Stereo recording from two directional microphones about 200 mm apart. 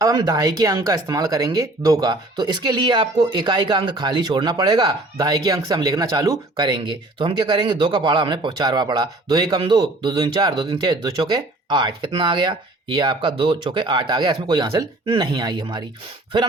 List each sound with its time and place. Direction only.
0.0 s speech: 20° right (ahead or behind)